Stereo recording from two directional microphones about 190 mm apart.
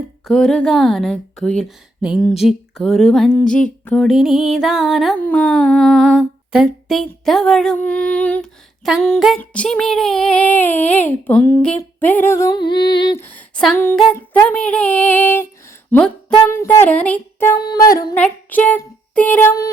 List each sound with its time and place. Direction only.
0.3 s speech: centre (ahead or behind)
9.4 s child singing: 5° left (ahead or behind); by 13.0 s 25° left (ahead or behind)
13.1 s child singing: 10° left (ahead or behind)
18.2 s a sound: 10° left (ahead or behind)